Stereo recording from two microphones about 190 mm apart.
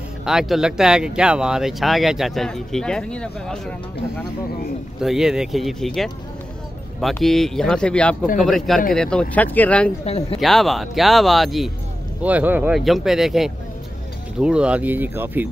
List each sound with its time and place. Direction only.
0.2 s speech: 5° right (ahead or behind)
5.0 s speech: centre (ahead or behind)
10.0 s speech: 35° left (ahead or behind)
10.4 s speech: centre (ahead or behind)